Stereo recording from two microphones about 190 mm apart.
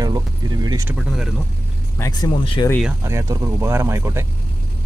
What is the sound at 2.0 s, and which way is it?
Speech, 20° left (ahead or behind).